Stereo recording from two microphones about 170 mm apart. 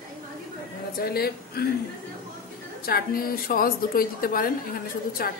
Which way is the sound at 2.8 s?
60° left (ahead or behind).